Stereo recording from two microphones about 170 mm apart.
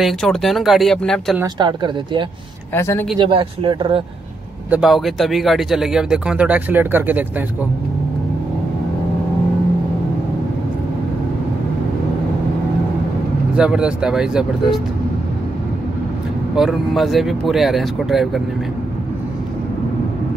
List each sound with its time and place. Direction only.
0.0 s speech: centre (ahead or behind)
1.4 s speech: 25° right (ahead or behind)
2.7 s speech: 15° left (ahead or behind)
3.2 s speech: 30° right (ahead or behind)
4.6 s speech: 5° right (ahead or behind)
13.6 s speech: 5° right (ahead or behind)
16.5 s speech: centre (ahead or behind)